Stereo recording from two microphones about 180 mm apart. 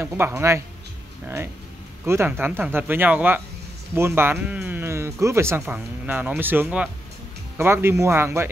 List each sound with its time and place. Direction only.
0.0 s speech: 15° right (ahead or behind)